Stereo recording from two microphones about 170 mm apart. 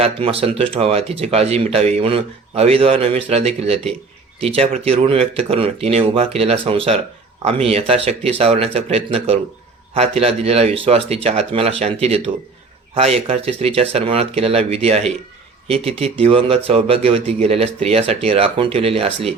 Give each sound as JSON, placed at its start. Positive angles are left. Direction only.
{"t": 0.0, "sound": "speech", "side_deg": -35}